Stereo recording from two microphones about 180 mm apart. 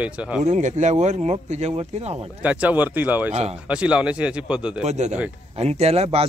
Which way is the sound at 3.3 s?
35° right (ahead or behind).